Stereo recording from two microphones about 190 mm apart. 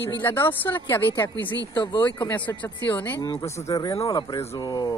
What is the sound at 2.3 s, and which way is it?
A man's voice, 10° left (ahead or behind).